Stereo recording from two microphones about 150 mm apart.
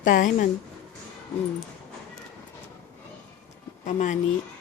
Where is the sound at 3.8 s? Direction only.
55° left (ahead or behind).